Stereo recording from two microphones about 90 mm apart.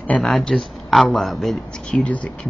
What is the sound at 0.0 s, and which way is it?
Speech, 15° left (ahead or behind).